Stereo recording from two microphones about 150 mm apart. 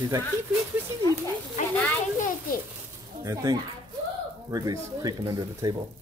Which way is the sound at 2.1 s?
60° left (ahead or behind).